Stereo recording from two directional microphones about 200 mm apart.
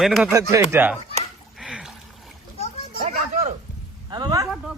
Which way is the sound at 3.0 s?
35° right (ahead or behind).